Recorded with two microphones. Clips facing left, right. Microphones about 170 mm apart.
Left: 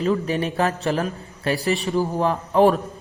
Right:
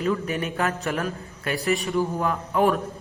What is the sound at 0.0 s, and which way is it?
A woman's voice, 35° left (ahead or behind).